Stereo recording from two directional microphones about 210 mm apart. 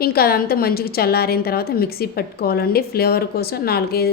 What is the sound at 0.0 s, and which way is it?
A woman's voice, 45° left (ahead or behind).